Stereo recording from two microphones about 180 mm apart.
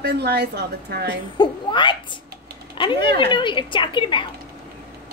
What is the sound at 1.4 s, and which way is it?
A child's voice, 25° left (ahead or behind).